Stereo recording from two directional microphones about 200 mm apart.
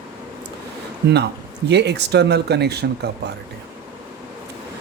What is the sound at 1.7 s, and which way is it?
Speech, 55° right (ahead or behind).